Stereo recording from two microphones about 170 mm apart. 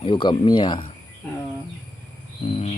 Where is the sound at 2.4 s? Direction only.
40° left (ahead or behind).